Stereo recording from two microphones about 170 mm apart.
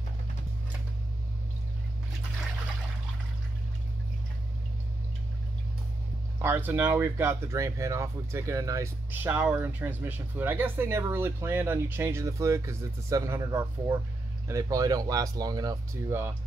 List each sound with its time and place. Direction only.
6.4 s speech: 10° right (ahead or behind)